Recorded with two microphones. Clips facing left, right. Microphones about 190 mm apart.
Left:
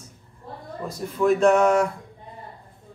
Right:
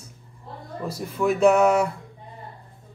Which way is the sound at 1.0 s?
5° right (ahead or behind).